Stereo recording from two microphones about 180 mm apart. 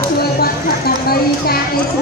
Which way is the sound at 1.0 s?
60° left (ahead or behind).